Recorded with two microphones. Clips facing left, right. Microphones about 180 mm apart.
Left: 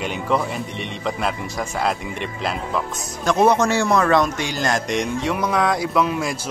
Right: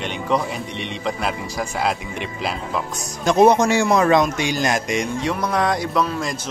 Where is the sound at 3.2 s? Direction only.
20° right (ahead or behind).